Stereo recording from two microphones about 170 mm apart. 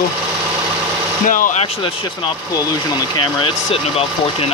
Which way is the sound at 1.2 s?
50° left (ahead or behind).